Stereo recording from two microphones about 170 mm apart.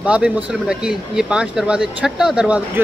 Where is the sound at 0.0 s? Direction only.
5° right (ahead or behind).